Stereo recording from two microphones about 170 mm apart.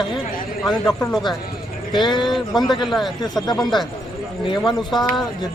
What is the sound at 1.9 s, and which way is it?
Speech, 25° left (ahead or behind).